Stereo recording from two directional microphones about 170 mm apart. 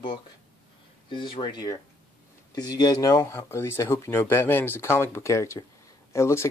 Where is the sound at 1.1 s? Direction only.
30° left (ahead or behind).